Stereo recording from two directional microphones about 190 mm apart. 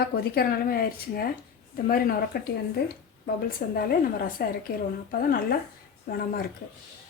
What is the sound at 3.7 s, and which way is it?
A woman's voice, 50° left (ahead or behind).